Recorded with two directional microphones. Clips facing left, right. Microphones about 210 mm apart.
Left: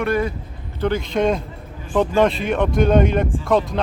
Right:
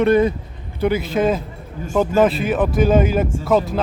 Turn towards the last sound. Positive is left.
turn(degrees=-5)  # may be behind; listen again after turning